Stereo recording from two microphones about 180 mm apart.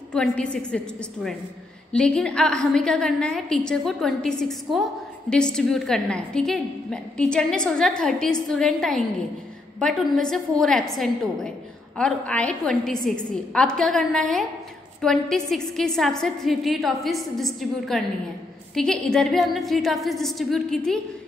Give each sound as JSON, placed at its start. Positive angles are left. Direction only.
{"t": 0.1, "sound": "a woman's voice", "side_deg": 5}